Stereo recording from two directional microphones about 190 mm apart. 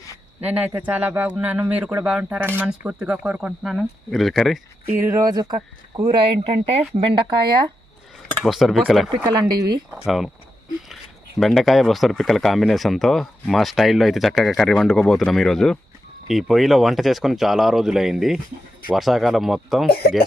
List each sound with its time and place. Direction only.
0.4 s a man's voice: 5° right (ahead or behind)
4.9 s speech: 15° right (ahead or behind)
8.4 s speech: centre (ahead or behind)
9.0 s speech: 20° right (ahead or behind)
10.1 s speech: centre (ahead or behind)
11.3 s speech: centre (ahead or behind)
19.9 s speech: 55° left (ahead or behind)